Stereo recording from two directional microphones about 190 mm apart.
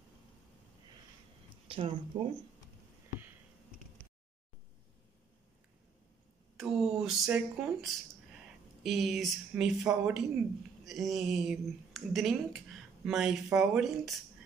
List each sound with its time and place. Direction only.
1.7 s speech: 25° right (ahead or behind)
6.5 s speech: centre (ahead or behind)